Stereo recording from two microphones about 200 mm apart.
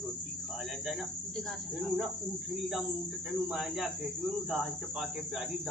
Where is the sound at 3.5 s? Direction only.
Centre (ahead or behind).